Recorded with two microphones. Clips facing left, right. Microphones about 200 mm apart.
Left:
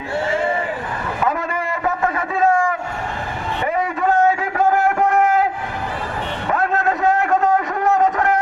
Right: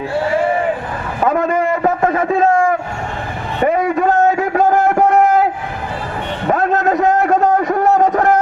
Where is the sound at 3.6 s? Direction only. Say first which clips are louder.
Right 7 dB; 40° right (ahead or behind).